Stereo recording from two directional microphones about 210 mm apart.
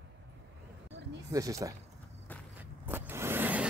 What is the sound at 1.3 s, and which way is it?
Speech, 15° right (ahead or behind).